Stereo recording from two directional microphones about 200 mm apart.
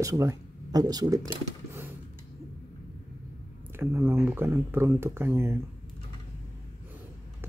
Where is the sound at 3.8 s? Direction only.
15° right (ahead or behind).